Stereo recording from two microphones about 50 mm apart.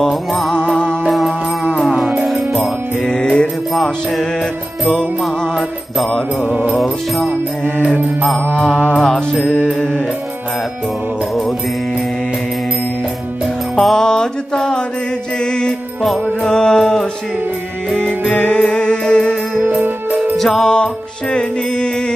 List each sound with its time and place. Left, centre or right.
0.0 s music: centre
0.6 s music: centre
1.0 s music: centre
3.0 s music: centre
3.7 s music: centre
6.4 s music: right
6.7 s music: centre
8.9 s mantra: centre
13.7 s music: centre
15.4 s mantra: centre
17.9 s music: left
19.6 s music: right
20.3 s music: centre
20.7 s music: centre